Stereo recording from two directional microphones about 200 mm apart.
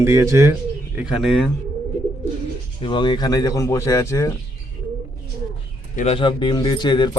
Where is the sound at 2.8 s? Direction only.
25° left (ahead or behind).